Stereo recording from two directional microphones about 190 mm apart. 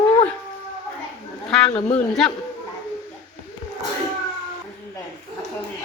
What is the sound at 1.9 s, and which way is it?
Speech, 5° left (ahead or behind).